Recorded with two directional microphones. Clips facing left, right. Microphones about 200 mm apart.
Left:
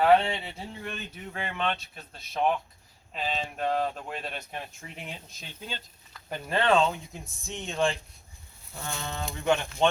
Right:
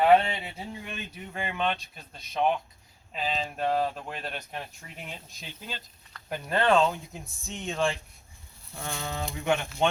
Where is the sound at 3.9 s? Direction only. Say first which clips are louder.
Even; centre (ahead or behind).